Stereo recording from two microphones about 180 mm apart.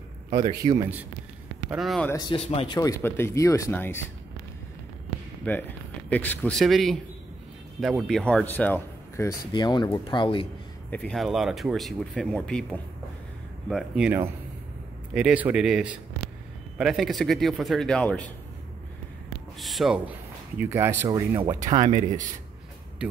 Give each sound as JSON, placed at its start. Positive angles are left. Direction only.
{"t": 0.4, "sound": "a man's voice", "side_deg": -25}
{"t": 1.7, "sound": "speech", "side_deg": 0}
{"t": 2.0, "sound": "speech", "side_deg": 25}
{"t": 2.8, "sound": "speech", "side_deg": 15}
{"t": 5.4, "sound": "speech", "side_deg": 10}
{"t": 10.9, "sound": "speech", "side_deg": 5}
{"t": 13.7, "sound": "speech", "side_deg": -5}
{"t": 19.6, "sound": "speech", "side_deg": 0}
{"t": 20.5, "sound": "speech", "side_deg": -10}